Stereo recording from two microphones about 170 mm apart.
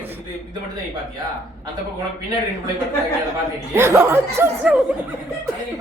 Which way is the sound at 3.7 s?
15° right (ahead or behind).